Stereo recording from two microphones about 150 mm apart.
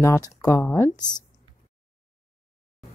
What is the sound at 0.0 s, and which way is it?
Speech, 20° left (ahead or behind).